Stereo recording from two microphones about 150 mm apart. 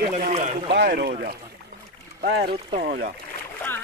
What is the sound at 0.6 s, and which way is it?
Speech, 90° right.